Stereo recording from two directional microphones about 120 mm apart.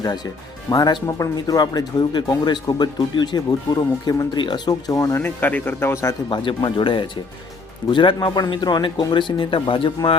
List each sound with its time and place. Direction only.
0.7 s speech: 30° left (ahead or behind)
6.3 s speech: 45° left (ahead or behind)